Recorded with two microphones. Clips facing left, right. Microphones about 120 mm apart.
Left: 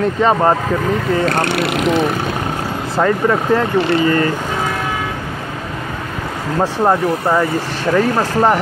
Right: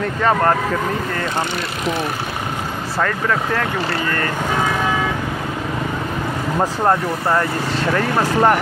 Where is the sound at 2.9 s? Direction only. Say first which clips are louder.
Left 6 dB; 20° left (ahead or behind).